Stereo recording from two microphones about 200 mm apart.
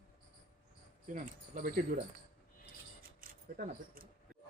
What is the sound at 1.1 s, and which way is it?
Speech, 40° right (ahead or behind).